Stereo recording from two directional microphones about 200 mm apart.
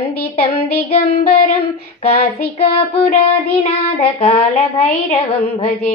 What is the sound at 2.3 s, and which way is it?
Child singing, 50° left (ahead or behind).